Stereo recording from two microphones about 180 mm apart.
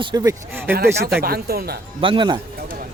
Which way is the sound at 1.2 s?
60° right (ahead or behind).